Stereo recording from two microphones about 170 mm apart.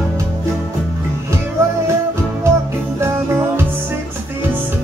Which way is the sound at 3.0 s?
15° right (ahead or behind).